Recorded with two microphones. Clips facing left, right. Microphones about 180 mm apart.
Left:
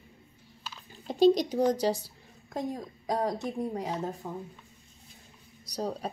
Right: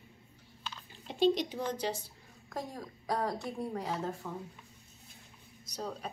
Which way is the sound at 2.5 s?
20° left (ahead or behind).